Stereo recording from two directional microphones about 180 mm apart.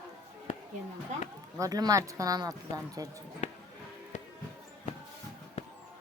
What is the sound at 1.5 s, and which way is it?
Speech, 20° right (ahead or behind).